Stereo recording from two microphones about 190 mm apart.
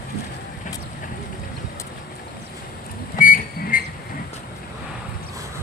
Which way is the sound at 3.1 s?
45° left (ahead or behind).